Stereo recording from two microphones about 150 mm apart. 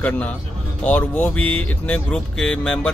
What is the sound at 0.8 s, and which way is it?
Speech, 10° left (ahead or behind).